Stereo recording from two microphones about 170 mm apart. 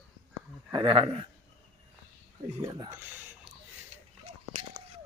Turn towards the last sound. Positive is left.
turn(degrees=-10)  # may be behind; listen again after turning